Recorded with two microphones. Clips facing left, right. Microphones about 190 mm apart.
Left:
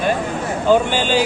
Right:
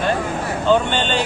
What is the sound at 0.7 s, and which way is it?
Speech, 10° left (ahead or behind).